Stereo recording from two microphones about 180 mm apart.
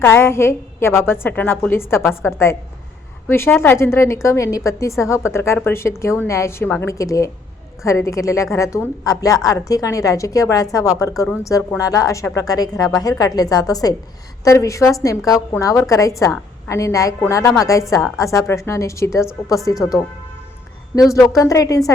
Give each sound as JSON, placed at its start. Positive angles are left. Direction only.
{"t": 0.0, "sound": "a woman's voice", "side_deg": 15}